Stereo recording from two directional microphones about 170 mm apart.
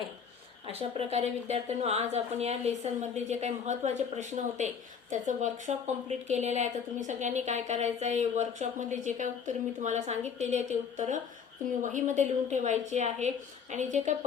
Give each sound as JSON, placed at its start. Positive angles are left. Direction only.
{"t": 0.7, "sound": "speech", "side_deg": -35}